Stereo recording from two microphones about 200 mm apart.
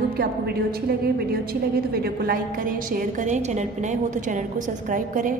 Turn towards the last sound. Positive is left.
turn(degrees=-40)  # may be behind; listen again after turning